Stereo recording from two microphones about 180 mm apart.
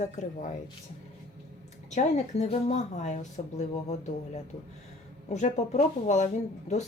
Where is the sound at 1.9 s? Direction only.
40° left (ahead or behind).